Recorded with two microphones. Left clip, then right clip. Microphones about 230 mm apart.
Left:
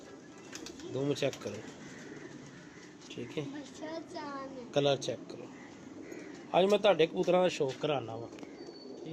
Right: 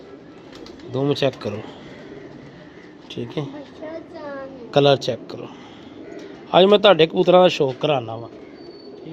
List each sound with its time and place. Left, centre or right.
0.9 s speech: right
3.2 s speech: right
4.7 s speech: right
6.5 s speech: right